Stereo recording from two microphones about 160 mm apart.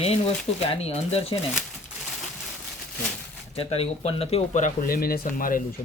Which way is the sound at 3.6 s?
40° left (ahead or behind).